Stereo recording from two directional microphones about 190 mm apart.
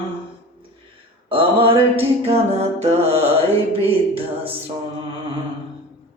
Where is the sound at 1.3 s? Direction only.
30° right (ahead or behind).